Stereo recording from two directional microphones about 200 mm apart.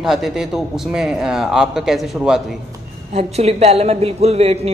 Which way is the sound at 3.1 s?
30° right (ahead or behind).